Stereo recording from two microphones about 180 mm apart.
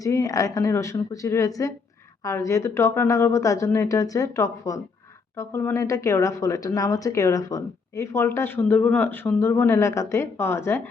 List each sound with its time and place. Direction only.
0.0 s speech: 20° left (ahead or behind)